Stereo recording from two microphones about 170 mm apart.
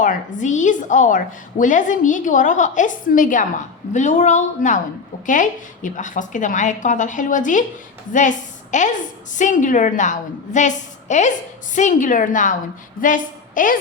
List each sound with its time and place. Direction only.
0.0 s a woman's voice: 50° left (ahead or behind)